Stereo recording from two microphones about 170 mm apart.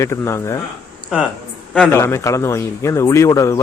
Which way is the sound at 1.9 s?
15° left (ahead or behind).